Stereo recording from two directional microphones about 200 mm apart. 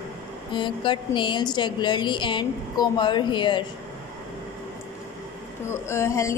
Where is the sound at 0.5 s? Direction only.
25° left (ahead or behind).